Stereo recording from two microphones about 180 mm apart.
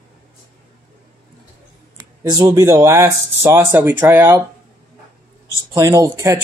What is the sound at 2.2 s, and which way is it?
Speech, 20° right (ahead or behind).